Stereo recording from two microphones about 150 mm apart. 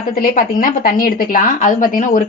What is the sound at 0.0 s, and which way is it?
A woman's voice, 70° left (ahead or behind).